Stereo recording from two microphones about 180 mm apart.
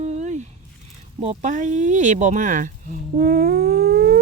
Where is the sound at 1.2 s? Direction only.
35° right (ahead or behind).